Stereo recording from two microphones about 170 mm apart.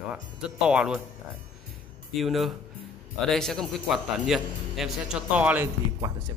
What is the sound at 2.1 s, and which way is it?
Speech, centre (ahead or behind).